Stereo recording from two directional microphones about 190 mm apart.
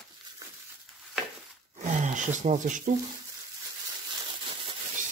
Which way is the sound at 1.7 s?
40° right (ahead or behind).